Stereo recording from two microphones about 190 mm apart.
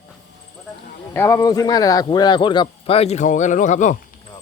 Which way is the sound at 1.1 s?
15° left (ahead or behind).